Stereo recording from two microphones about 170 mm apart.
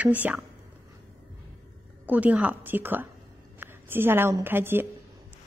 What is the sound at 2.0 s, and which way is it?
A woman's voice, 10° right (ahead or behind).